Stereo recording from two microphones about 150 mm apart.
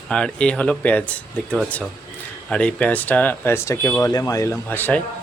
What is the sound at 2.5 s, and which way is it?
Speech, 10° left (ahead or behind).